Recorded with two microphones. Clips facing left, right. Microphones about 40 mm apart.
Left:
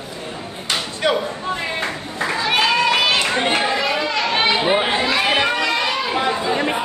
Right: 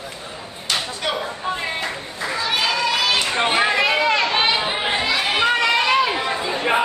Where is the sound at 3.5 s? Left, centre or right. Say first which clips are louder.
Right 1 dB; right.